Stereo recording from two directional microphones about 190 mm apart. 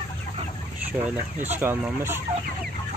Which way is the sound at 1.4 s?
10° right (ahead or behind).